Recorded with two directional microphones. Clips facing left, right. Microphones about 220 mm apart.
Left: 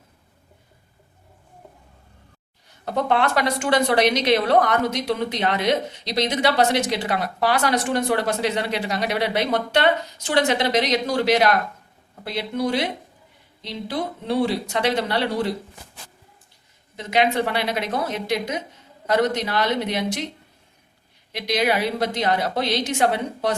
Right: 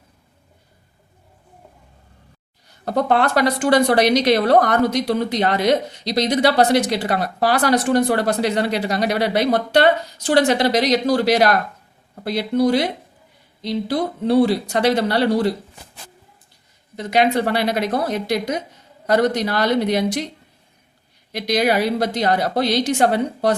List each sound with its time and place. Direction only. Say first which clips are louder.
2.8 s a woman's voice: right 3 dB; 40° right (ahead or behind)
17.0 s a woman's voice: right 3 dB; 40° right (ahead or behind)
21.3 s a woman's voice: right 4 dB; 40° right (ahead or behind)